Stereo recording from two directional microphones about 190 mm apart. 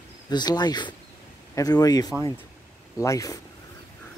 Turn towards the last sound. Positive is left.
turn(degrees=15)  # may be behind; listen again after turning